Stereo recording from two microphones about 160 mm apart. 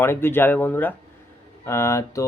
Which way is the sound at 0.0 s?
15° left (ahead or behind).